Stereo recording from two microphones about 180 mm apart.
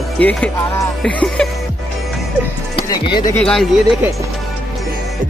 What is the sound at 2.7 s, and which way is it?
Speech, 25° left (ahead or behind).